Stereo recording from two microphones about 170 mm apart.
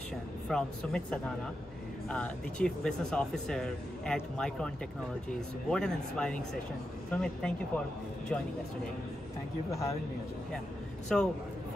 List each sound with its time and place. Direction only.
0.5 s speech: 5° left (ahead or behind)
5.7 s speech: 5° left (ahead or behind)
9.7 s speech: 20° left (ahead or behind)
11.1 s speech: 5° left (ahead or behind)